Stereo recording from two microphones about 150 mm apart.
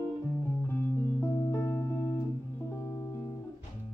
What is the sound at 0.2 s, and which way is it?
Music, 15° left (ahead or behind).